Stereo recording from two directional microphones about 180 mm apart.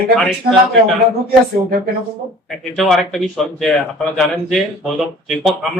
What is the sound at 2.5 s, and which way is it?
A man's voice, centre (ahead or behind).